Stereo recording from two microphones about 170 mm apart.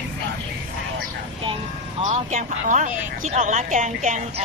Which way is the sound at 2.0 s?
45° right (ahead or behind).